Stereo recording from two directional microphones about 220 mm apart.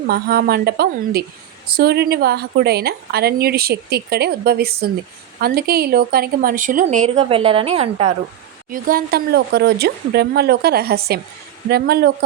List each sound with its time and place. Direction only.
0.1 s a woman's voice: 45° right (ahead or behind); by 8.1 s 30° right (ahead or behind)
8.7 s a woman's voice: 40° right (ahead or behind)